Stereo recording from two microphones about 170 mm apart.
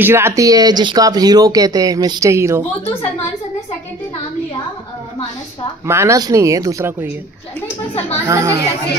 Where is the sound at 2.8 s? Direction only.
35° left (ahead or behind).